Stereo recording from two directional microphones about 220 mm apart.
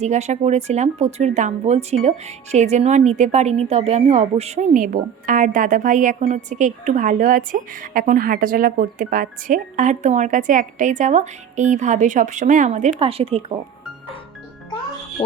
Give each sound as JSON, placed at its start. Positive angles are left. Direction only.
{"t": 0.0, "sound": "a woman's voice", "side_deg": -30}